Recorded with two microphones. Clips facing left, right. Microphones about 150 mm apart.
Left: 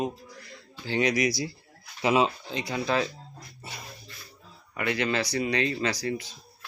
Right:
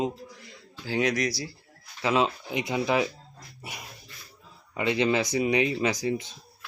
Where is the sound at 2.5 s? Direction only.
20° right (ahead or behind).